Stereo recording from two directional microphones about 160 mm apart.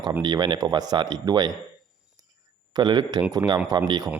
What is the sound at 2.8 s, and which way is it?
Speech, 25° right (ahead or behind).